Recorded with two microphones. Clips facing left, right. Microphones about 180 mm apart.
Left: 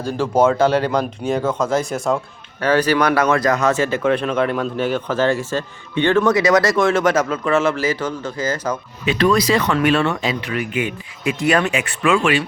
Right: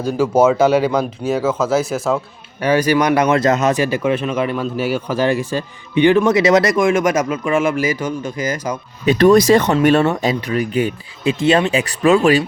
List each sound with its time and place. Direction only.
0.0 s speech: 10° right (ahead or behind)
9.0 s speech: 45° right (ahead or behind)